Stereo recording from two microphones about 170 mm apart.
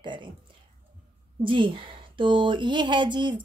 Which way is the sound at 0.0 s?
30° right (ahead or behind).